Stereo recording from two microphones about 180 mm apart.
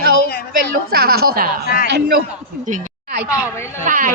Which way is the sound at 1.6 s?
55° left (ahead or behind).